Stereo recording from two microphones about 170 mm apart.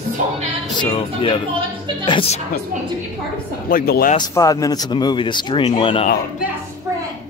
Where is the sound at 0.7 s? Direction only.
30° left (ahead or behind).